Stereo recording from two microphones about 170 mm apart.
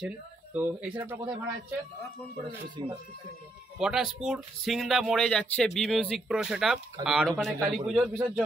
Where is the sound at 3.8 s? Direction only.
Centre (ahead or behind).